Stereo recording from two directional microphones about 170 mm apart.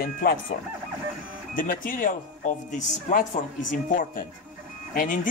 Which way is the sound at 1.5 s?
55° left (ahead or behind).